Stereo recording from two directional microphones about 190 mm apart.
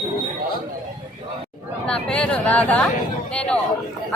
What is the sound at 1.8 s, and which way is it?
A woman's voice, 5° left (ahead or behind).